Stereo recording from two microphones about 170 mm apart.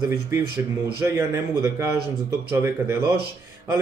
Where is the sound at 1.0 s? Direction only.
15° right (ahead or behind).